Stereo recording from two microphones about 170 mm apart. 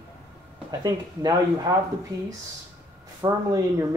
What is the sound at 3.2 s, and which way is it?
Speech, 20° right (ahead or behind).